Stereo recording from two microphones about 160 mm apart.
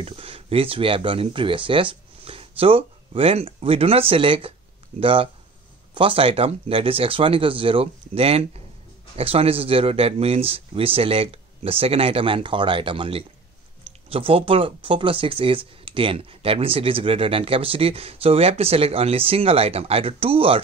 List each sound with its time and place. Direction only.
0.0 s speech: 35° right (ahead or behind)